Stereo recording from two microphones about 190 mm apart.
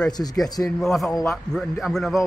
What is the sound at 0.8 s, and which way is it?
Speech, centre (ahead or behind).